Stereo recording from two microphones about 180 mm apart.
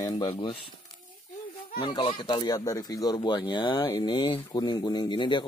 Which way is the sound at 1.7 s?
25° left (ahead or behind).